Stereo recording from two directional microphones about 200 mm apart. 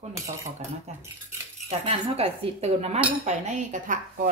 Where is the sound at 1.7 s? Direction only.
30° right (ahead or behind).